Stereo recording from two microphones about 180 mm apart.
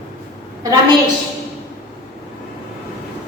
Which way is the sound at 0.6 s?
20° right (ahead or behind).